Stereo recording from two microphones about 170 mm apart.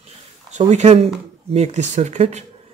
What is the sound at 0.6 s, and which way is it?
Speech, 40° right (ahead or behind).